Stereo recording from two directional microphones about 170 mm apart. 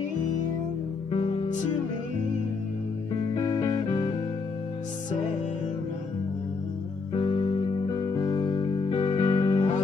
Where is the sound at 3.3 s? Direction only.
25° left (ahead or behind).